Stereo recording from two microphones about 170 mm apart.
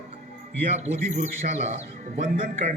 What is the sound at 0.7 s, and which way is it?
A man's voice, 40° right (ahead or behind).